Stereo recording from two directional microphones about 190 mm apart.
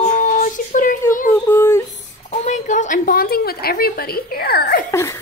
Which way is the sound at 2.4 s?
40° left (ahead or behind).